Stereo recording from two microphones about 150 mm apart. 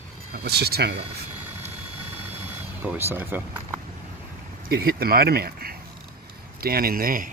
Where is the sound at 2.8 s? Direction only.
15° right (ahead or behind).